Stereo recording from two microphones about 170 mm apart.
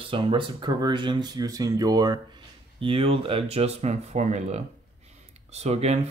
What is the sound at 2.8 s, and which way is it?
Speech, 35° right (ahead or behind).